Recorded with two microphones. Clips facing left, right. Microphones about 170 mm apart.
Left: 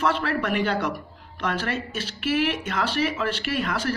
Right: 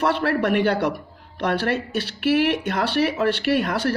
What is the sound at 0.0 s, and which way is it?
Speech, 60° right (ahead or behind).